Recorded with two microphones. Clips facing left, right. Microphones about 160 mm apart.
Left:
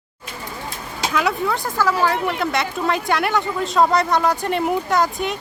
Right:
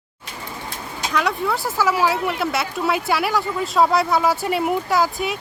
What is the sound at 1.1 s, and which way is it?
Speech, centre (ahead or behind).